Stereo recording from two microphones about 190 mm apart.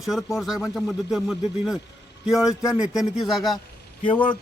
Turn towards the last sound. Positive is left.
turn(degrees=10)  # may be behind; listen again after turning